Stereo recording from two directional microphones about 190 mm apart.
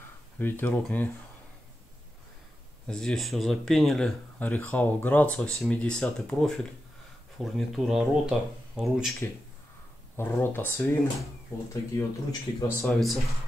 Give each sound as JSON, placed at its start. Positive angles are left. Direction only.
{"t": 0.4, "sound": "speech", "side_deg": 10}
{"t": 2.9, "sound": "speech", "side_deg": 5}
{"t": 10.1, "sound": "speech", "side_deg": 10}
{"t": 12.8, "sound": "speech", "side_deg": 0}